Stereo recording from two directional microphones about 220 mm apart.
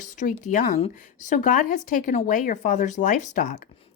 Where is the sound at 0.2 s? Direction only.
35° left (ahead or behind).